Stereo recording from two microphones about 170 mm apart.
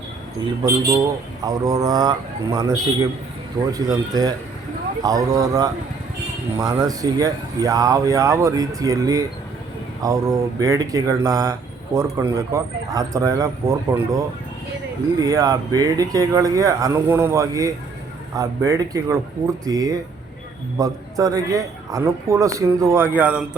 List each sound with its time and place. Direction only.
1.5 s a man's voice: 20° right (ahead or behind)